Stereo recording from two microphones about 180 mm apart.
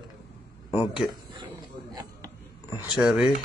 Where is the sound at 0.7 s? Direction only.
25° left (ahead or behind).